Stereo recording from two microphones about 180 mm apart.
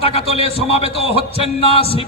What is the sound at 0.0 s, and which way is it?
Speech, 35° left (ahead or behind).